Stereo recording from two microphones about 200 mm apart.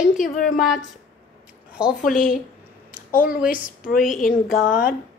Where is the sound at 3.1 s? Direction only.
45° left (ahead or behind).